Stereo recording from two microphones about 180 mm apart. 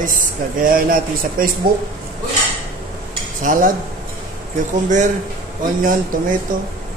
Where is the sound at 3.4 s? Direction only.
50° right (ahead or behind).